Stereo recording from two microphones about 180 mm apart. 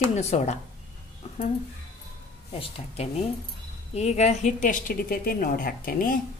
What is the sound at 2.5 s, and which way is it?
A woman's voice, 30° left (ahead or behind).